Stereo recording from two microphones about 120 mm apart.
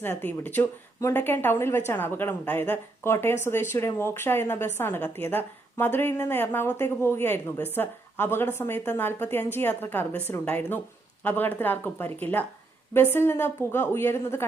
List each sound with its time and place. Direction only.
0.0 s a woman's voice: 15° left (ahead or behind)